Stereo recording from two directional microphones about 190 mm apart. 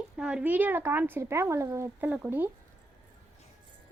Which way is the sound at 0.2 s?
5° right (ahead or behind).